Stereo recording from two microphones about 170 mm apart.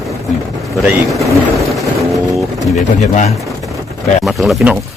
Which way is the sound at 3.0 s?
45° left (ahead or behind).